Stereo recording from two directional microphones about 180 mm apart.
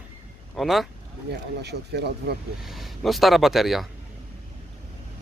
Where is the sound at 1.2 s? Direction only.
65° right (ahead or behind).